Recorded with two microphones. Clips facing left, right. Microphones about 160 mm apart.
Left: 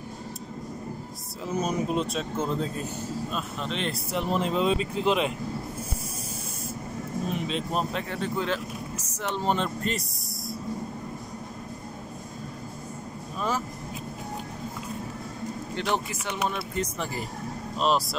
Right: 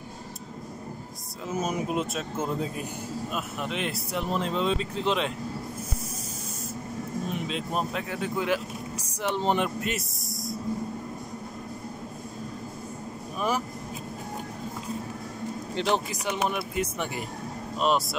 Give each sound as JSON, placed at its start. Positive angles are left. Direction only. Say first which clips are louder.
{"t": 1.5, "sound": "speech", "louder": "left 1 dB", "side_deg": -5}
{"t": 7.2, "sound": "speech", "louder": "left 4 dB", "side_deg": -5}
{"t": 9.8, "sound": "speech", "louder": "left 1 dB", "side_deg": -5}
{"t": 15.7, "sound": "a man's voice", "louder": "right 2 dB", "side_deg": -20}
{"t": 17.7, "sound": "speech", "louder": "even", "side_deg": 0}